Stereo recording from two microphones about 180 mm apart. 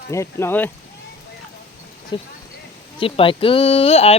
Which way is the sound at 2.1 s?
25° left (ahead or behind).